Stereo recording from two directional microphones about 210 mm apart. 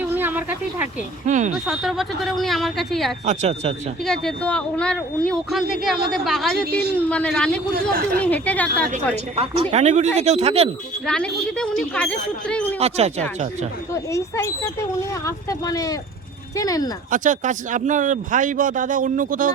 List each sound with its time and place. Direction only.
0.0 s a sound: 10° right (ahead or behind)
1.3 s speech: 35° right (ahead or behind)
1.6 s speech: centre (ahead or behind)
3.2 s speech: 30° right (ahead or behind)
4.0 s speech: centre (ahead or behind)
9.3 s speech: 30° right (ahead or behind)
11.0 s speech: 5° left (ahead or behind)
12.8 s speech: 30° right (ahead or behind)
13.9 s speech: 15° left (ahead or behind)
17.1 s speech: 35° right (ahead or behind)